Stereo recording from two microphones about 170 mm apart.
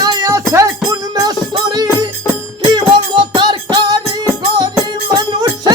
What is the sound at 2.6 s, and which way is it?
Music, 25° right (ahead or behind).